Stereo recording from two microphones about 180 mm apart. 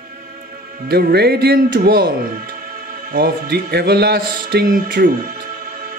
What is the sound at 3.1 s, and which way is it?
Music, 55° right (ahead or behind).